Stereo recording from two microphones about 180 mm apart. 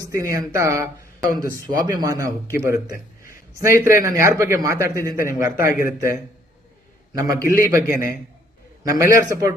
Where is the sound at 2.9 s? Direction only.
50° left (ahead or behind).